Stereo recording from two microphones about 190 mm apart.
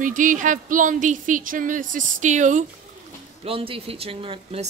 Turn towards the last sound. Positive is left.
turn(degrees=-30)  # may be behind; listen again after turning